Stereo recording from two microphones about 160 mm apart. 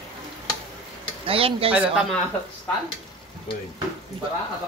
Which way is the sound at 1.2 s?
35° right (ahead or behind).